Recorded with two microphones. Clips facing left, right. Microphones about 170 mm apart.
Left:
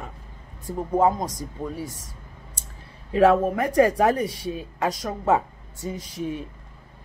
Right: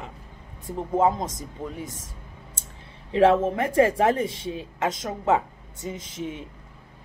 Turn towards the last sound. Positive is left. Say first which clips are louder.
# left 3 dB
turn(degrees=-20)  # may be behind; listen again after turning